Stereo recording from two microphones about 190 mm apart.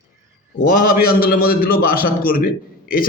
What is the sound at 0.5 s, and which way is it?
A man's voice, 50° left (ahead or behind).